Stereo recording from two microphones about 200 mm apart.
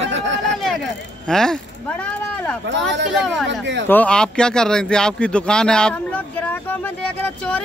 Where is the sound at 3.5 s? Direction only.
60° right (ahead or behind).